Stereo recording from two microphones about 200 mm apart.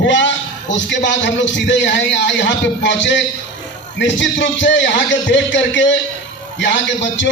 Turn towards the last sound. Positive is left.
turn(degrees=65)  # may be behind; listen again after turning